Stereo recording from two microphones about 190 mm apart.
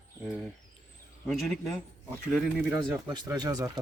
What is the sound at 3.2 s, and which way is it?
Speech, 20° right (ahead or behind).